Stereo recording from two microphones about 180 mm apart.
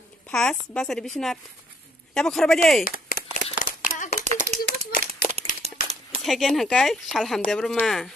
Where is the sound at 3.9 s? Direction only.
45° left (ahead or behind).